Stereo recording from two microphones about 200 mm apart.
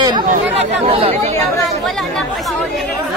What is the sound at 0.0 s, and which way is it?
Chatter, 20° right (ahead or behind).